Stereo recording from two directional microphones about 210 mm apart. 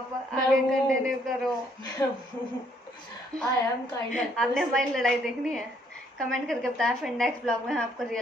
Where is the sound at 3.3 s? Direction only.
15° right (ahead or behind).